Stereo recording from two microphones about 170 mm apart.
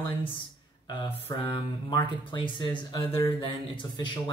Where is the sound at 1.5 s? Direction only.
25° left (ahead or behind).